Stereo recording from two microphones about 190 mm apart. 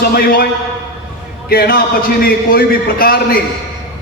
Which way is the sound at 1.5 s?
50° left (ahead or behind).